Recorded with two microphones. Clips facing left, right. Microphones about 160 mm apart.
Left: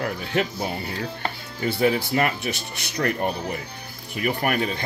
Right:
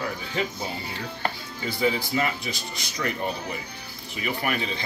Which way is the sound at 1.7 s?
65° left (ahead or behind).